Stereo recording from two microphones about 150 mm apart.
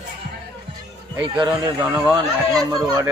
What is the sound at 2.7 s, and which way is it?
Speech, 25° right (ahead or behind).